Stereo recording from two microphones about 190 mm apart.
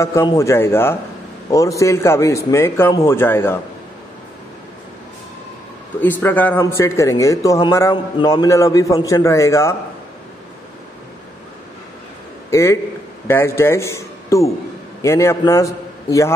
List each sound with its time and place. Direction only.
0.0 s speech: 15° left (ahead or behind)
5.9 s speech: 10° left (ahead or behind)
12.4 s a man's voice: 15° left (ahead or behind)